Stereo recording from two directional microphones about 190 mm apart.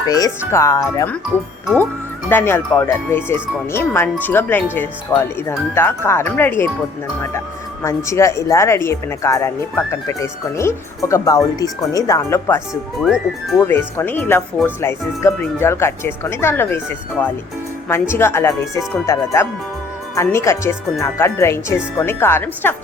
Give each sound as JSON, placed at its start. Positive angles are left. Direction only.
{"t": 0.1, "sound": "speech", "side_deg": 15}
{"t": 1.6, "sound": "speech", "side_deg": 5}
{"t": 13.0, "sound": "speech", "side_deg": 0}
{"t": 13.6, "sound": "speech", "side_deg": 15}